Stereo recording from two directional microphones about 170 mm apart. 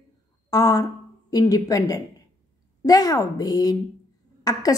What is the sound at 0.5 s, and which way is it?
A woman's voice, 20° left (ahead or behind).